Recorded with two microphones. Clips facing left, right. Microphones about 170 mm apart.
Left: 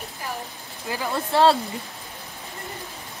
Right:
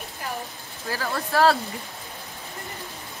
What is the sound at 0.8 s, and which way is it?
Speech, 15° left (ahead or behind).